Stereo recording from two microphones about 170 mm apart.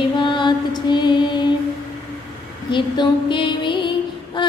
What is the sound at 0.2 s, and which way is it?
Music, 25° left (ahead or behind).